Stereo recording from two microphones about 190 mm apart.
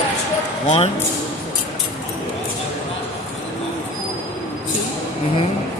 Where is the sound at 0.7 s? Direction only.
35° left (ahead or behind).